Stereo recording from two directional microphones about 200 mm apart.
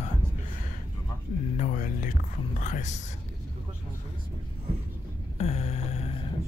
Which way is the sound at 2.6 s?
40° left (ahead or behind).